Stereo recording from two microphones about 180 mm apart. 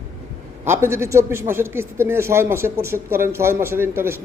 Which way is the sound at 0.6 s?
15° right (ahead or behind).